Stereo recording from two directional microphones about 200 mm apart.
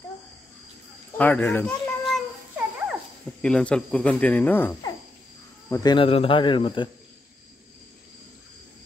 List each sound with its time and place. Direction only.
1.1 s a sound: 5° left (ahead or behind)
3.4 s cricket: 5° left (ahead or behind)
5.7 s speech: 20° left (ahead or behind)